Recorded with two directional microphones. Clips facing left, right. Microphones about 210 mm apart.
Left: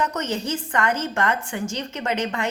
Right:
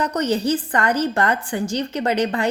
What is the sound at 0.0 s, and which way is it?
A woman's voice, 35° right (ahead or behind).